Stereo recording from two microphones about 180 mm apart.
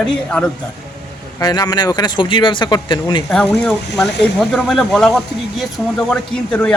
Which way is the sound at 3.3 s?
5° left (ahead or behind).